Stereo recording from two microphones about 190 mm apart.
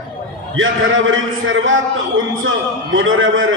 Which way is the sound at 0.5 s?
90° right.